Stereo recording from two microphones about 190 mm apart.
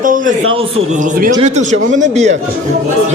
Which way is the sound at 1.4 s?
35° right (ahead or behind).